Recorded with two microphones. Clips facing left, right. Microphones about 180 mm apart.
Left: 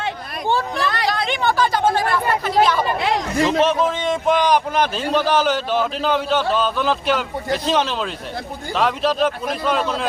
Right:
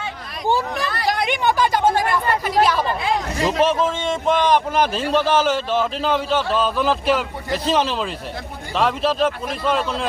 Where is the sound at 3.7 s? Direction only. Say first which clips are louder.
Left 1 dB; 5° left (ahead or behind).